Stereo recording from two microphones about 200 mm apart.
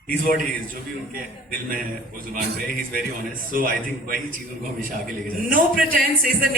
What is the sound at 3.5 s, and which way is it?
Speech, 45° right (ahead or behind).